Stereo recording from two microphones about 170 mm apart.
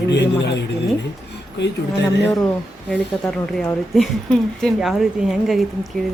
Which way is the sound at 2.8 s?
5° left (ahead or behind).